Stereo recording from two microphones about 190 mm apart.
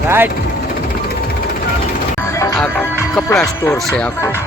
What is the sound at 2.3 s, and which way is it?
Music, 15° left (ahead or behind).